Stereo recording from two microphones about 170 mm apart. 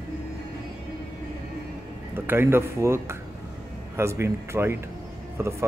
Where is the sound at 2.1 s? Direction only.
15° right (ahead or behind).